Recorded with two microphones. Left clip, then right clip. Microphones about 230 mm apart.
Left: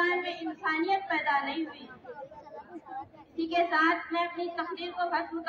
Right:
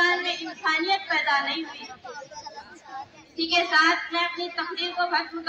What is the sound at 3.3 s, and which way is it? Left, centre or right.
A woman's voice, left.